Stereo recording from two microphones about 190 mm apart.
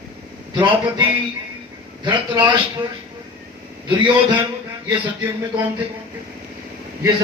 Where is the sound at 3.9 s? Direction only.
25° right (ahead or behind).